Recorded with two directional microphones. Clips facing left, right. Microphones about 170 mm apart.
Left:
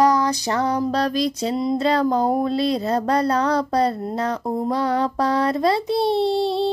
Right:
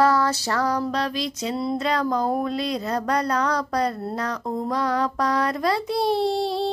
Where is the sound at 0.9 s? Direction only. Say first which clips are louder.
Left 5 dB; 40° left (ahead or behind).